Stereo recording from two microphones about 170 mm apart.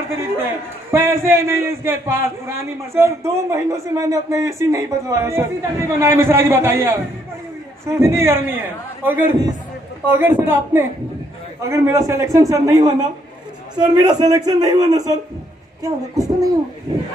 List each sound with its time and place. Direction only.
0.9 s a man's voice: 15° right (ahead or behind)